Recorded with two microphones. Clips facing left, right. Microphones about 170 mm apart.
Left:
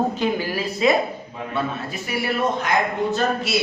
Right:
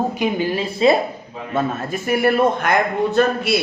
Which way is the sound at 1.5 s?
50° right (ahead or behind).